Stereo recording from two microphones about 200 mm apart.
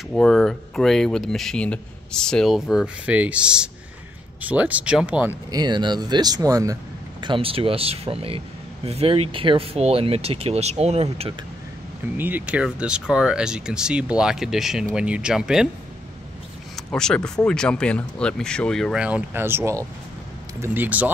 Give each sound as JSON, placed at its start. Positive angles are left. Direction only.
{"t": 0.1, "sound": "speech", "side_deg": 0}
{"t": 5.5, "sound": "speech", "side_deg": -20}
{"t": 12.2, "sound": "speech", "side_deg": -10}
{"t": 16.7, "sound": "speech", "side_deg": 5}